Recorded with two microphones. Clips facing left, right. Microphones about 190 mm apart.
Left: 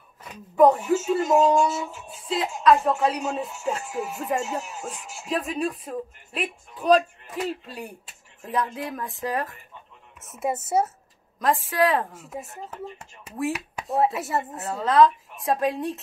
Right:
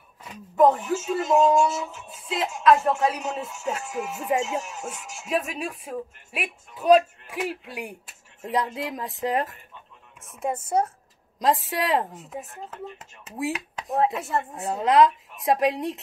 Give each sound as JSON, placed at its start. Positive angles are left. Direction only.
{"t": 0.6, "sound": "a woman's voice", "side_deg": 0}
{"t": 10.4, "sound": "speech", "side_deg": 5}
{"t": 11.3, "sound": "a woman's voice", "side_deg": -20}
{"t": 12.2, "sound": "speech", "side_deg": 0}
{"t": 14.5, "sound": "a woman's voice", "side_deg": -15}